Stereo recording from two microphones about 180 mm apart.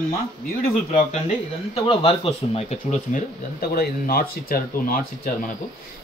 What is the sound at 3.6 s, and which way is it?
Speech, 55° left (ahead or behind).